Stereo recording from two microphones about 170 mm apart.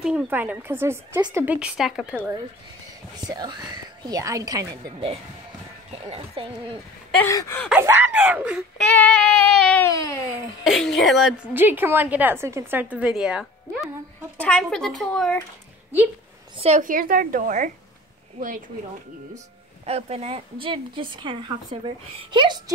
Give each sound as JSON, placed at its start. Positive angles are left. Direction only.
{"t": 0.0, "sound": "a woman's voice", "side_deg": -10}
{"t": 3.3, "sound": "speech", "side_deg": -25}
{"t": 5.9, "sound": "speech", "side_deg": -35}
{"t": 7.2, "sound": "gasp", "side_deg": 20}
{"t": 7.8, "sound": "a woman's voice", "side_deg": -10}
{"t": 8.7, "sound": "child singing", "side_deg": 5}
{"t": 9.8, "sound": "gasp", "side_deg": 20}
{"t": 10.6, "sound": "child singing", "side_deg": 0}
{"t": 11.5, "sound": "a woman's voice", "side_deg": -10}
{"t": 14.4, "sound": "child singing", "side_deg": 5}
{"t": 16.5, "sound": "a woman's voice", "side_deg": -40}
{"t": 16.8, "sound": "speech", "side_deg": -55}
{"t": 19.9, "sound": "speech", "side_deg": -35}